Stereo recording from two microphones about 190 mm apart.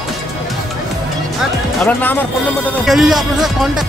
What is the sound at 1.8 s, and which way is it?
Speech, 10° left (ahead or behind).